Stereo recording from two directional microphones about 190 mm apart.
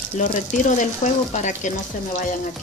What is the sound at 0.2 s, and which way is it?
Speech, 40° left (ahead or behind).